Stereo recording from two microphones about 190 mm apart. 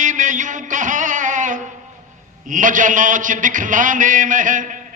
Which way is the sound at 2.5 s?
40° right (ahead or behind).